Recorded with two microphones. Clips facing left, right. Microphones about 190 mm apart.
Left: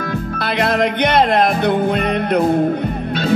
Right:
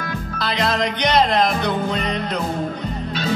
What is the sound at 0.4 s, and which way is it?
Music, 55° left (ahead or behind).